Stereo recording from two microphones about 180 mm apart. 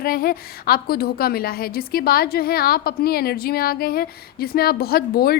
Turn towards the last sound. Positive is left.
turn(degrees=55)  # may be behind; listen again after turning